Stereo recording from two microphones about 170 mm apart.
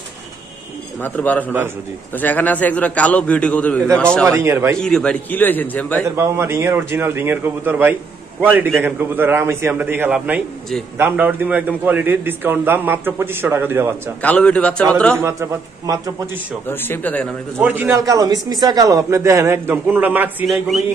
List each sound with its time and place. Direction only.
1.0 s a man's voice: 10° left (ahead or behind)
4.2 s speech: 15° right (ahead or behind)
4.7 s a man's voice: 5° left (ahead or behind)
6.0 s speech: 15° right (ahead or behind)
14.2 s a man's voice: 5° left (ahead or behind)
15.1 s speech: 15° right (ahead or behind)
16.6 s a man's voice: 10° left (ahead or behind)
17.6 s speech: 10° right (ahead or behind)